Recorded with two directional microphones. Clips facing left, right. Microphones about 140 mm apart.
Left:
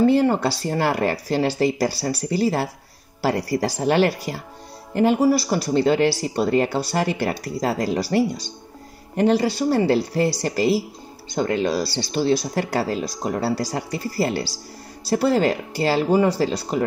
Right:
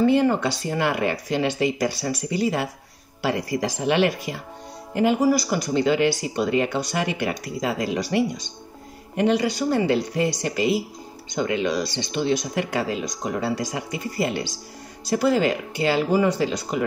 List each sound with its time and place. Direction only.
0.0 s speech: 35° left (ahead or behind)